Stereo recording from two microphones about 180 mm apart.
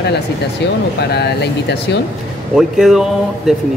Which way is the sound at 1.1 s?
65° left (ahead or behind).